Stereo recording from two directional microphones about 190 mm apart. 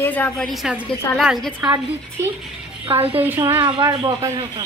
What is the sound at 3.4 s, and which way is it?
Speech, 25° right (ahead or behind).